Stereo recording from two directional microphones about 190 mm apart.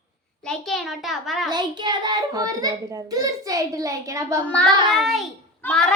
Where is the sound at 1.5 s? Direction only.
20° right (ahead or behind).